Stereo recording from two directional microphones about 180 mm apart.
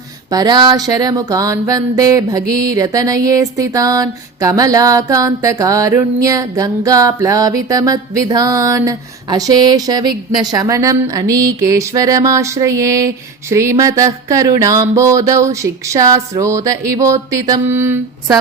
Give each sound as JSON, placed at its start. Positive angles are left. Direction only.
{"t": 0.3, "sound": "music", "side_deg": -20}